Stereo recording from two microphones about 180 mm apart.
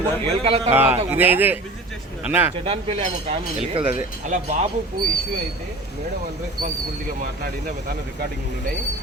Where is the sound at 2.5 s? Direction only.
35° right (ahead or behind).